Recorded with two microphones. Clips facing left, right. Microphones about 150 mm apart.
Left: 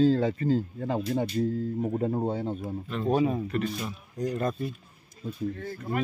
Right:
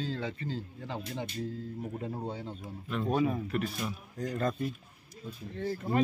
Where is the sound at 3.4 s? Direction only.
Centre (ahead or behind).